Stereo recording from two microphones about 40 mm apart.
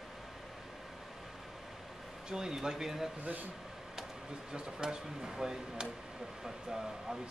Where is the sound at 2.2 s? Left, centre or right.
Centre.